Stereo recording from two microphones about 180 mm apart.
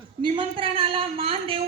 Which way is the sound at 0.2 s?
30° right (ahead or behind).